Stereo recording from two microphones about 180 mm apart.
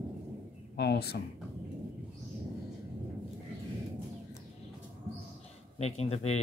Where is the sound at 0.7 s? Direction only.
65° left (ahead or behind).